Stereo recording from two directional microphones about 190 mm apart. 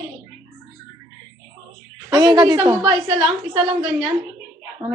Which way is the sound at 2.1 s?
20° right (ahead or behind).